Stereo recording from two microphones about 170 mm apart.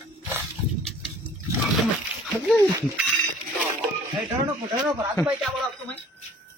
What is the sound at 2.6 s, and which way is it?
Bicycle bell, 15° right (ahead or behind).